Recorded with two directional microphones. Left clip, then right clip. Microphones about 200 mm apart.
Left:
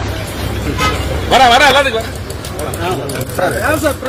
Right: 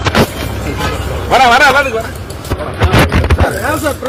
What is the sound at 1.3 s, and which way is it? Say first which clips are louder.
Speech: right 1 dB; centre (ahead or behind).